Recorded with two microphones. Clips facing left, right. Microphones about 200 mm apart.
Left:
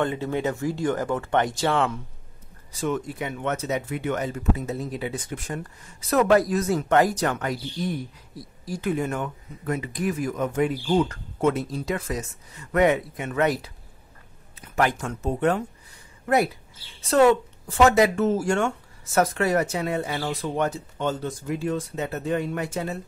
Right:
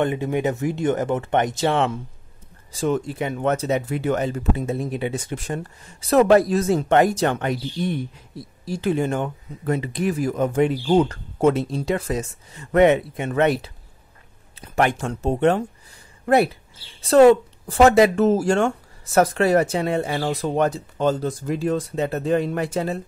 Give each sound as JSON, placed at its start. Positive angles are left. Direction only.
{"t": 0.0, "sound": "speech", "side_deg": -15}
{"t": 17.1, "sound": "speech", "side_deg": -35}
{"t": 20.1, "sound": "speech", "side_deg": -45}